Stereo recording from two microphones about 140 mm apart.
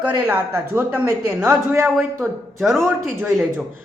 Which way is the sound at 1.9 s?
Centre (ahead or behind).